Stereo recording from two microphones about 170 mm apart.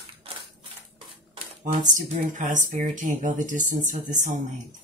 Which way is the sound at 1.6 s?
50° right (ahead or behind).